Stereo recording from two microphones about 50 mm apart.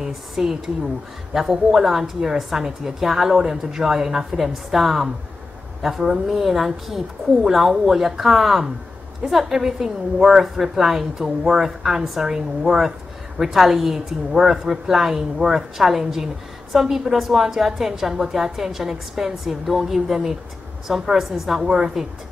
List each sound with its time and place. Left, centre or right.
0.0 s a woman's voice: centre
21.6 s a woman's voice: centre